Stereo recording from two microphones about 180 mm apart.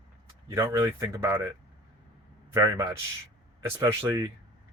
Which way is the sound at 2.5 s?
20° right (ahead or behind).